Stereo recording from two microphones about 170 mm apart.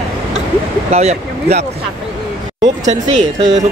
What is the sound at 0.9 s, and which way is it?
Speech, 40° right (ahead or behind).